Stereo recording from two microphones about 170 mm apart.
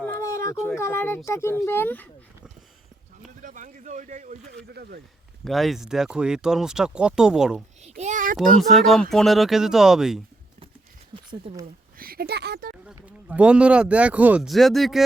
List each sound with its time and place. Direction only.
0.0 s a sound: 15° left (ahead or behind)
0.8 s speech: 15° left (ahead or behind)
3.4 s speech: 50° right (ahead or behind)
4.7 s speech: 65° right (ahead or behind)
5.5 s speech: centre (ahead or behind)
7.8 s a child's voice: 40° right (ahead or behind)
8.7 s speech: centre (ahead or behind)
11.1 s speech: 30° right (ahead or behind)
11.9 s speech: 60° right (ahead or behind)
12.8 s speech: 5° right (ahead or behind)